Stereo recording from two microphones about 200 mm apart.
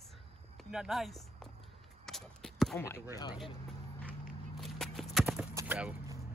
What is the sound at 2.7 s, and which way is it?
Speech, 15° left (ahead or behind).